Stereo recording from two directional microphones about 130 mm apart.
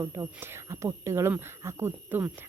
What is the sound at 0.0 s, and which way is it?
Speech, 20° right (ahead or behind).